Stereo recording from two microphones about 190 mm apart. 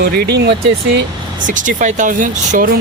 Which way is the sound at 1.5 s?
45° right (ahead or behind).